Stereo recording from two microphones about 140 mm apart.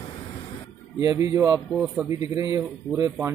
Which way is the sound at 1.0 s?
25° right (ahead or behind).